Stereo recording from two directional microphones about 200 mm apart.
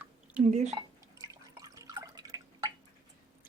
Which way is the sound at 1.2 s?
20° right (ahead or behind).